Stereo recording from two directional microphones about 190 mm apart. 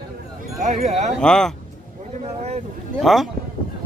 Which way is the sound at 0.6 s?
35° right (ahead or behind).